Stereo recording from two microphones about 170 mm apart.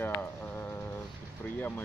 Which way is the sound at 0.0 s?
10° left (ahead or behind).